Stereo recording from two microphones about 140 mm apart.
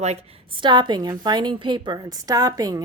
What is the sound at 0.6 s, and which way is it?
A woman's voice, 35° right (ahead or behind).